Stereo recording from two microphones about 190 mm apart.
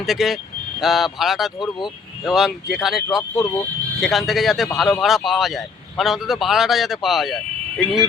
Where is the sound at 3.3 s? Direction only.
15° left (ahead or behind).